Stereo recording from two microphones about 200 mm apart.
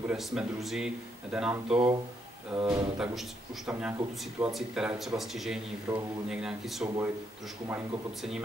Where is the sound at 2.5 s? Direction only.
20° right (ahead or behind).